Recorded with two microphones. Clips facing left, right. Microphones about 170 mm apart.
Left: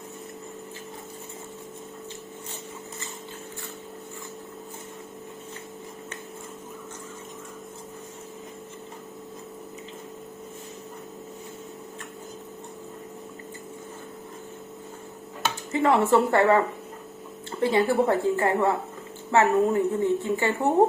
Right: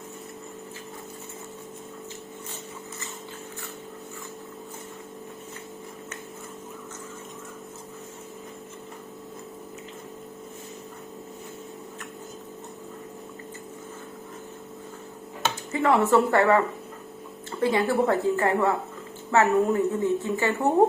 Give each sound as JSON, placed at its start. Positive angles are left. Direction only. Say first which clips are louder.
{"t": 15.7, "sound": "a woman's voice", "louder": "even", "side_deg": 20}
{"t": 17.6, "sound": "a woman's voice", "louder": "left 1 dB", "side_deg": 20}